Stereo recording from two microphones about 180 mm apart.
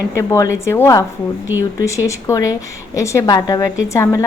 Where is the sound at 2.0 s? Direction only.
15° left (ahead or behind).